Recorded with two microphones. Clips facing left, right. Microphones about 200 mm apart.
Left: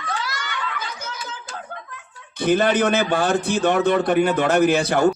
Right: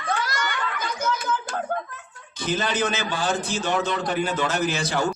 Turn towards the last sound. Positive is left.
turn(degrees=55)  # may be behind; listen again after turning